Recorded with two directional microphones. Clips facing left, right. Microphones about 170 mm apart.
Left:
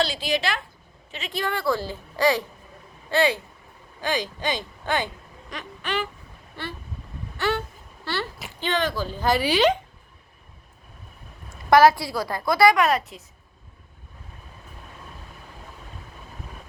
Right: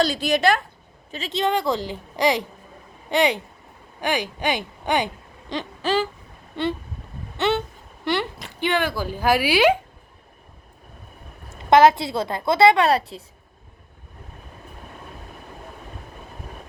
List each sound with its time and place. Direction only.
0.0 s speech: 45° right (ahead or behind)
1.3 s speech: 20° right (ahead or behind)
7.3 s a sound: 20° right (ahead or behind)
8.0 s speech: 20° right (ahead or behind)
11.7 s speech: 20° right (ahead or behind)